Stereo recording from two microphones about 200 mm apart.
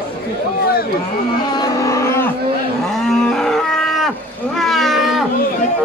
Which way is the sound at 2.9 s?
Centre (ahead or behind).